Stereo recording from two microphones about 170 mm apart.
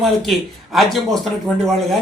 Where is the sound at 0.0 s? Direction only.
Centre (ahead or behind).